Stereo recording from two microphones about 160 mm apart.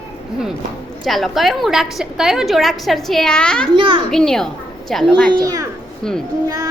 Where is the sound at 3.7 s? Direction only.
30° right (ahead or behind).